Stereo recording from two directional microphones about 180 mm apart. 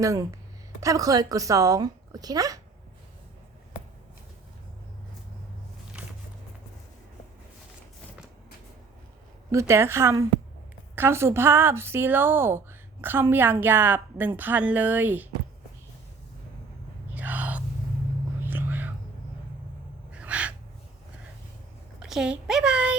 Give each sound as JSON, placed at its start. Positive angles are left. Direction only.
{"t": 0.0, "sound": "speech", "side_deg": -20}
{"t": 9.5, "sound": "a woman's voice", "side_deg": -15}
{"t": 17.2, "sound": "a sound", "side_deg": -10}
{"t": 18.4, "sound": "whispering", "side_deg": -10}
{"t": 20.1, "sound": "owl", "side_deg": -5}
{"t": 22.0, "sound": "a child's voice", "side_deg": -5}